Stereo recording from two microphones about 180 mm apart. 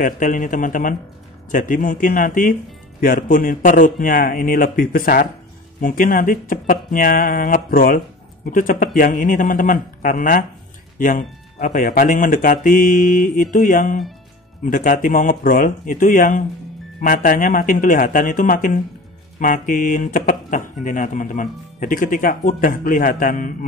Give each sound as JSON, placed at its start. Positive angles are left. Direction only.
{"t": 0.0, "sound": "speech", "side_deg": 50}